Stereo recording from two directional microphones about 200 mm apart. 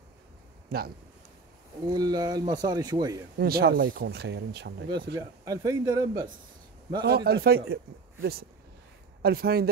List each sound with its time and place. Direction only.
0.7 s speech: 50° right (ahead or behind)
1.9 s speech: 20° right (ahead or behind)
3.3 s speech: 50° right (ahead or behind)
4.8 s speech: 20° right (ahead or behind)
7.1 s speech: 50° right (ahead or behind)